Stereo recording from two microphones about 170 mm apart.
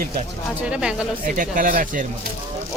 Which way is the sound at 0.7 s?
5° right (ahead or behind).